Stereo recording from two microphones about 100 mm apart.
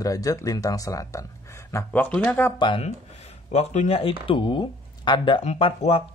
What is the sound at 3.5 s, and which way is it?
Speech, 85° left.